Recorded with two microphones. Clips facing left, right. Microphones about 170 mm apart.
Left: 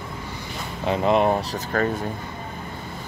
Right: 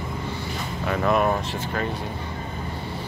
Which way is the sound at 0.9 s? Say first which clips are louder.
Left 2 dB; 25° left (ahead or behind).